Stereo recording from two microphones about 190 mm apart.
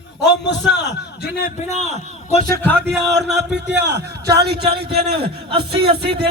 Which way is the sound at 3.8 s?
60° right (ahead or behind).